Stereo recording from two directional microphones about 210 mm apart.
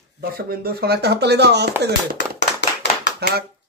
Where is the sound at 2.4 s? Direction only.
55° left (ahead or behind).